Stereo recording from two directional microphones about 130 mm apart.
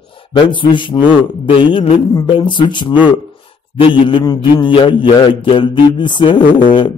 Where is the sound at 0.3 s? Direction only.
40° left (ahead or behind).